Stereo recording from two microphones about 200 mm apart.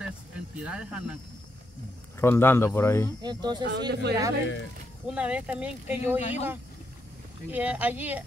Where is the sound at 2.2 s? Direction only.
10° left (ahead or behind).